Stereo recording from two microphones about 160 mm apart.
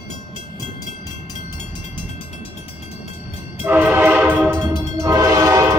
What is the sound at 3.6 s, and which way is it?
Train, 10° right (ahead or behind).